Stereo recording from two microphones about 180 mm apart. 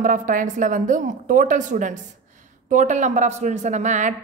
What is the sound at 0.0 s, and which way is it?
A woman's voice, 45° right (ahead or behind).